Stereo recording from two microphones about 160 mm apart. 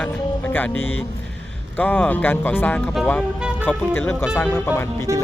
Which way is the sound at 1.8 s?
10° left (ahead or behind).